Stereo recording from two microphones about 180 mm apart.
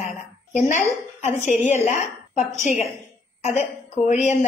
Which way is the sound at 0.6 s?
45° left (ahead or behind).